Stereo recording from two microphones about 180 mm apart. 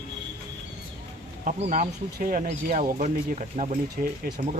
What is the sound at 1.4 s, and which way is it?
Speech, 45° right (ahead or behind).